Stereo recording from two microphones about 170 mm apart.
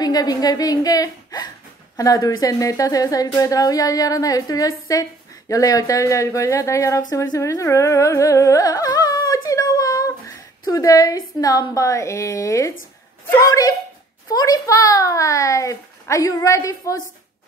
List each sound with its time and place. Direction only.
0.0 s a child's voice: 20° left (ahead or behind)
7.3 s carnatic music: 20° left (ahead or behind)
13.3 s a child's voice: 20° left (ahead or behind)